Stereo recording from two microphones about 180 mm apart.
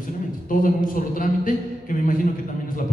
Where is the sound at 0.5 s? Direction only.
50° left (ahead or behind).